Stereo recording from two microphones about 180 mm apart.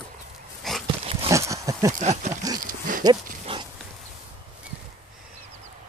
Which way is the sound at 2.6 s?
50° right (ahead or behind).